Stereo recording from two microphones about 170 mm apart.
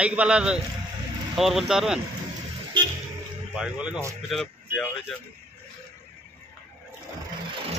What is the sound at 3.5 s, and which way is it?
Speech, 5° right (ahead or behind).